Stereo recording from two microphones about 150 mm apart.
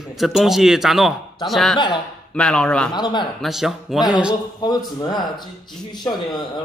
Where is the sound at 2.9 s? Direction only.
30° left (ahead or behind).